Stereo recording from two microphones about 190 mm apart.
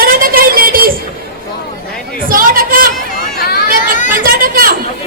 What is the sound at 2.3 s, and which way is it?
Speech, 50° right (ahead or behind).